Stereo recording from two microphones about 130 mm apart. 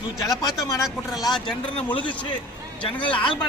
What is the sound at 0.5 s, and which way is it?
Speech, centre (ahead or behind).